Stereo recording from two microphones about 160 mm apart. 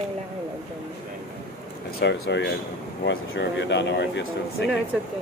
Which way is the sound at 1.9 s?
80° left.